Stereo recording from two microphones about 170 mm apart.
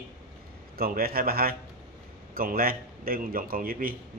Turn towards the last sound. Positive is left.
turn(degrees=-55)  # may be behind; listen again after turning